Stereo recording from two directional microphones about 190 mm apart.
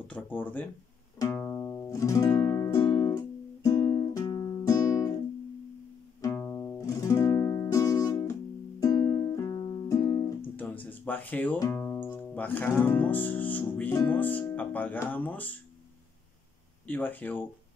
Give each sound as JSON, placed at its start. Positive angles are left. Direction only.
{"t": 0.1, "sound": "speech", "side_deg": 10}
{"t": 1.2, "sound": "music", "side_deg": 10}
{"t": 6.2, "sound": "music", "side_deg": 10}
{"t": 10.5, "sound": "speech", "side_deg": 10}
{"t": 16.8, "sound": "speech", "side_deg": 10}